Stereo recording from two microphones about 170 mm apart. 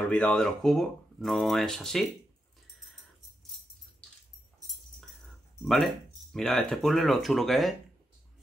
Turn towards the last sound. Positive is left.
turn(degrees=0)  # may be behind; listen again after turning